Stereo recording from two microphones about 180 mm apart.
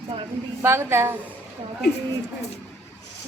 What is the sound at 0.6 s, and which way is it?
Speech, 15° right (ahead or behind).